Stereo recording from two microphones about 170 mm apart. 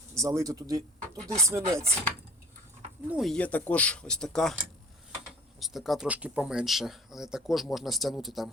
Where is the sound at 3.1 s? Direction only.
Centre (ahead or behind).